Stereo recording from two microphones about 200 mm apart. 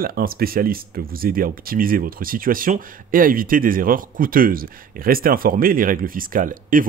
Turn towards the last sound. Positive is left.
turn(degrees=-45)  # may be behind; listen again after turning